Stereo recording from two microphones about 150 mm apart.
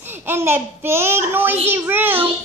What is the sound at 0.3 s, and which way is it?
A child's voice, 15° right (ahead or behind).